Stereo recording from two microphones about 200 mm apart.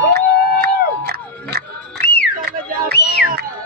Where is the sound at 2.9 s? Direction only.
55° left (ahead or behind).